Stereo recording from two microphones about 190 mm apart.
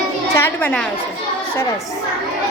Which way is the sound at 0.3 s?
10° left (ahead or behind).